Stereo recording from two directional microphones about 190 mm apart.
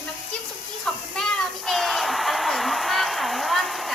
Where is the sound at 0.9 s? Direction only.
5° left (ahead or behind).